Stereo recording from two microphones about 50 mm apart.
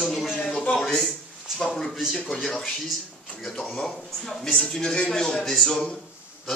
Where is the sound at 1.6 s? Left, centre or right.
Centre.